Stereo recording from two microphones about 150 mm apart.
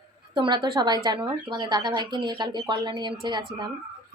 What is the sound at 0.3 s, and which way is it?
Speech, 30° right (ahead or behind).